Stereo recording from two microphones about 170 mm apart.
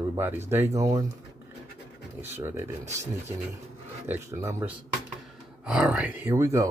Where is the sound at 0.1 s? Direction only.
15° right (ahead or behind).